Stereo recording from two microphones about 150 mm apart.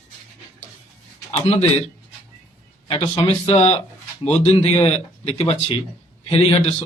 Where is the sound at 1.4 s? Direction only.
45° left (ahead or behind).